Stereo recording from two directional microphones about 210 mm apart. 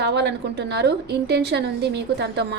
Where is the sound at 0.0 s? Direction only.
50° right (ahead or behind).